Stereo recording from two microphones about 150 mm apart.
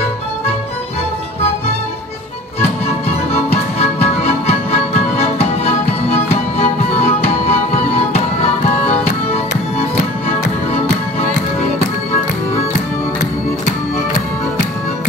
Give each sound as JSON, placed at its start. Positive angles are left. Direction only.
{"t": 3.7, "sound": "music", "side_deg": 45}